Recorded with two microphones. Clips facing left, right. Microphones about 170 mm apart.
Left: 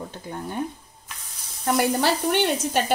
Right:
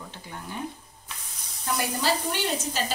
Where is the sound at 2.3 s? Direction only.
60° left (ahead or behind).